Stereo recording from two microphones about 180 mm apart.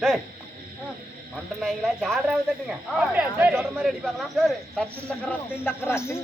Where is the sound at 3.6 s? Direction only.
Centre (ahead or behind).